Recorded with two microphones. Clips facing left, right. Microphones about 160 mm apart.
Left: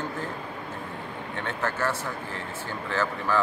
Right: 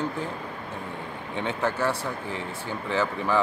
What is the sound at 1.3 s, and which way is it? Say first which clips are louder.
Speech: right 4 dB; 15° right (ahead or behind).